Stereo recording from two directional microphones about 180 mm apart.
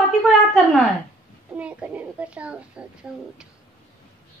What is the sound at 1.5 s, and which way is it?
Speech, 5° right (ahead or behind).